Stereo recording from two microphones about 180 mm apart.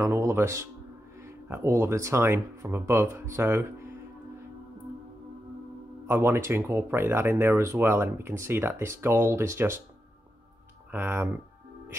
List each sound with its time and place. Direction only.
0.0 s speech: 15° right (ahead or behind)
6.0 s speech: 15° right (ahead or behind)
10.9 s speech: 10° right (ahead or behind)